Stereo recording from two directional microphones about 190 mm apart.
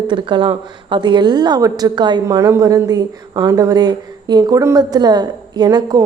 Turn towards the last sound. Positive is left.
turn(degrees=-20)  # may be behind; listen again after turning